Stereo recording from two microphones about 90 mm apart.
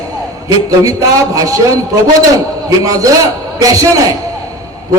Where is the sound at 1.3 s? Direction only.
40° right (ahead or behind).